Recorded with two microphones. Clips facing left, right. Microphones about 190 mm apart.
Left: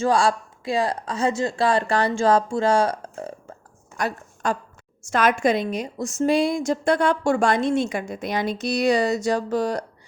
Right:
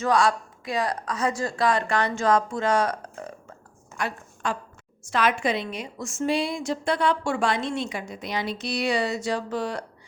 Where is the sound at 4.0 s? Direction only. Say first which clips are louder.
Left 4 dB; 40° left (ahead or behind).